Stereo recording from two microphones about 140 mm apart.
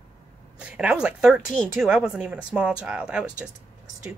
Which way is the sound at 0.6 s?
10° right (ahead or behind).